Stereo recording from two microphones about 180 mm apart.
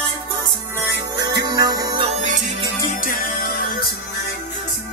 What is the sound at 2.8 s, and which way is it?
Music, 50° left (ahead or behind).